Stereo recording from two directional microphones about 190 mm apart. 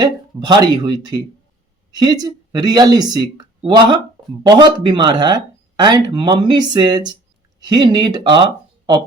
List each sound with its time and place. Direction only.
0.0 s speech: 20° right (ahead or behind)